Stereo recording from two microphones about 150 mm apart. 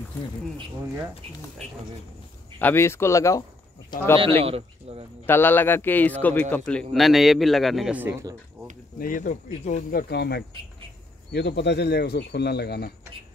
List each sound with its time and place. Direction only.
2.6 s a man's voice: 15° left (ahead or behind)
4.4 s speech: 40° right (ahead or behind)
5.2 s a man's voice: 15° left (ahead or behind); by 8.1 s 5° right (ahead or behind)
8.1 s speech: 20° right (ahead or behind)
9.0 s speech: 65° left (ahead or behind)
9.8 s speech: 85° left